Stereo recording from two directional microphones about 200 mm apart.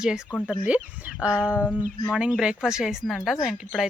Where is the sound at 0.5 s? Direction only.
5° right (ahead or behind).